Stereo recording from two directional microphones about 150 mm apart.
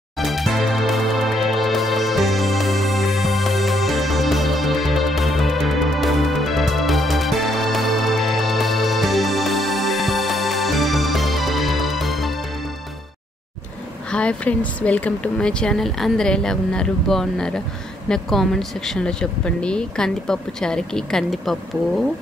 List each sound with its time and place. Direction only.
0.2 s music: centre (ahead or behind)
14.1 s speech: 10° left (ahead or behind)